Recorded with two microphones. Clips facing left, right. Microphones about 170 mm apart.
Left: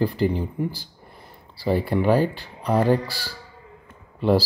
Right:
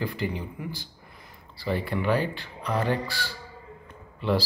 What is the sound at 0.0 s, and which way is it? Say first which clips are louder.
A man's voice: left 8 dB; 35° left (ahead or behind).